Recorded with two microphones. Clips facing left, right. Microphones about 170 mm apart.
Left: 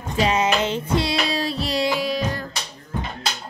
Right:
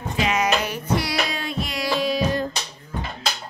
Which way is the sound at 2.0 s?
Centre (ahead or behind).